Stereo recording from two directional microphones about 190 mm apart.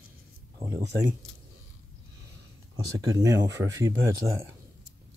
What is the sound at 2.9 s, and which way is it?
Speech, 20° right (ahead or behind).